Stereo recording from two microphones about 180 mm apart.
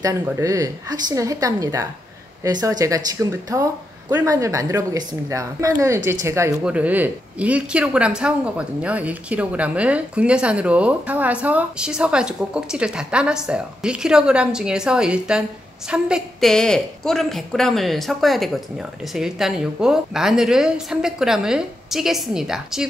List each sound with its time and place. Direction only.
0.0 s a woman's voice: 20° right (ahead or behind); by 22.8 s 5° right (ahead or behind)